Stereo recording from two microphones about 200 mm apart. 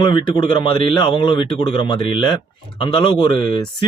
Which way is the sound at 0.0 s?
25° left (ahead or behind).